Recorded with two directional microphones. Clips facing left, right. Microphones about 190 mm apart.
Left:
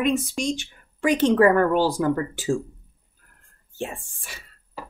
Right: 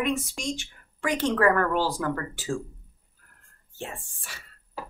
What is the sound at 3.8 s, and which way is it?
Speech, 15° left (ahead or behind).